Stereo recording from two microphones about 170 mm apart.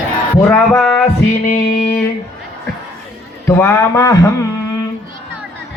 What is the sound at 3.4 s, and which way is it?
Speech, 15° left (ahead or behind).